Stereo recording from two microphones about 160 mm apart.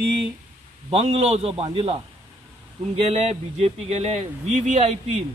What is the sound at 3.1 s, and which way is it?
Speech, 40° right (ahead or behind).